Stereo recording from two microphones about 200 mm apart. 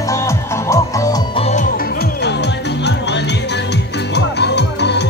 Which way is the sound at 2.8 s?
60° left (ahead or behind).